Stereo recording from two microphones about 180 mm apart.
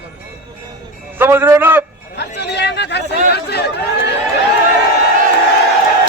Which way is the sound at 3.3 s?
65° left (ahead or behind).